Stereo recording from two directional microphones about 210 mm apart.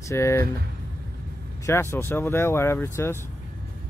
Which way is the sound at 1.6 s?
10° left (ahead or behind).